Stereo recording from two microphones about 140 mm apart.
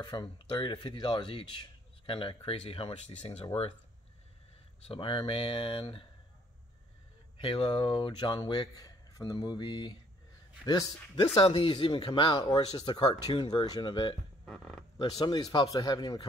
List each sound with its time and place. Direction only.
0.0 s speech: 35° left (ahead or behind); by 3.4 s 50° left (ahead or behind)
4.8 s speech: 40° left (ahead or behind)
7.3 s a man's voice: 40° left (ahead or behind)
11.3 s speech: 40° left (ahead or behind)
14.4 s speech: 5° left (ahead or behind)
15.0 s a man's voice: 30° left (ahead or behind)